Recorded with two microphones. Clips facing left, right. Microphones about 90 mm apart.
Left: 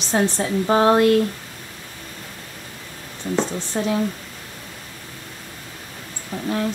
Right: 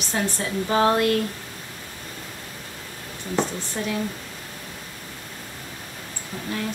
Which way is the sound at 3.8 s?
35° left (ahead or behind).